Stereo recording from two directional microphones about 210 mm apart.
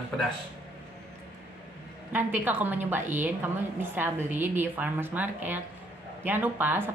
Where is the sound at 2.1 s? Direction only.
10° right (ahead or behind).